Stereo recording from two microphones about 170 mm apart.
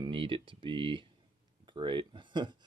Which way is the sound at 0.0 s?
30° right (ahead or behind).